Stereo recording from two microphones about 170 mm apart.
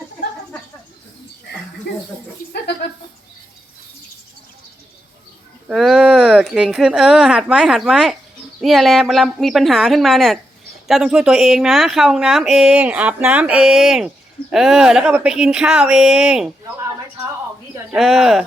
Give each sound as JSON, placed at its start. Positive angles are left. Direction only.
{"t": 5.6, "sound": "speech", "side_deg": -5}
{"t": 17.9, "sound": "speech", "side_deg": 0}